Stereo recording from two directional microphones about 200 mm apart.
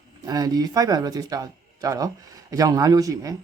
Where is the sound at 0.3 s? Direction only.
20° right (ahead or behind).